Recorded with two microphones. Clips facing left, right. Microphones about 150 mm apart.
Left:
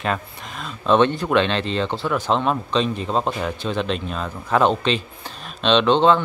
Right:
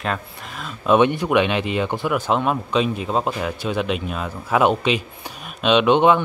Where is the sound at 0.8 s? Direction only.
10° right (ahead or behind).